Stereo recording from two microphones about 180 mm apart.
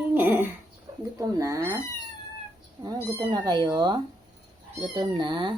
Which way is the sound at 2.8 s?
25° right (ahead or behind).